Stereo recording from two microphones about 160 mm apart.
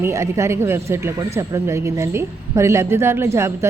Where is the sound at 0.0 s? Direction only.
20° right (ahead or behind).